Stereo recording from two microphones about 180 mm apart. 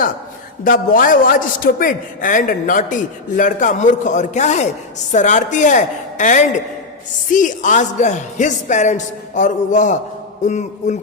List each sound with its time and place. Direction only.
0.6 s a man's voice: 50° left (ahead or behind)